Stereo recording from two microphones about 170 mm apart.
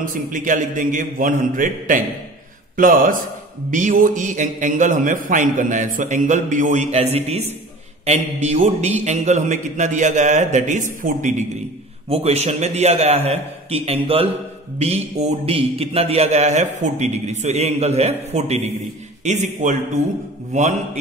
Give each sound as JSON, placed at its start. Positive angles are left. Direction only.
{"t": 0.0, "sound": "a man's voice", "side_deg": -50}
{"t": 12.1, "sound": "a man's voice", "side_deg": -35}